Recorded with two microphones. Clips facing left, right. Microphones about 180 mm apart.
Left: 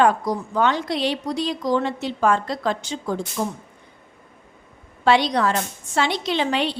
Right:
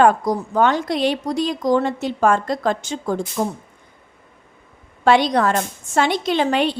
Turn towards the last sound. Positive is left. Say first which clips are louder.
# right 4 dB
turn(degrees=-50)  # may be behind; listen again after turning